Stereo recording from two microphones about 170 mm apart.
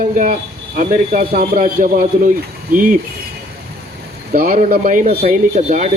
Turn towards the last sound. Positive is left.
turn(degrees=-50)  # may be behind; listen again after turning